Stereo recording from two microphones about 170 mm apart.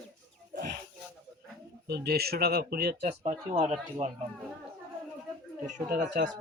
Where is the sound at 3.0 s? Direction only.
40° right (ahead or behind).